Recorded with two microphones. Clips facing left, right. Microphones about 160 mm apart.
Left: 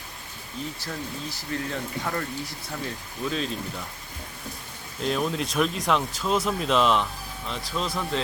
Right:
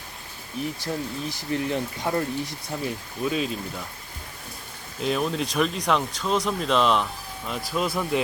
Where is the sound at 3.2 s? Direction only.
10° right (ahead or behind).